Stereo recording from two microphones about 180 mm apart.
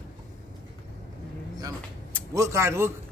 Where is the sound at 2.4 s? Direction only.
15° right (ahead or behind).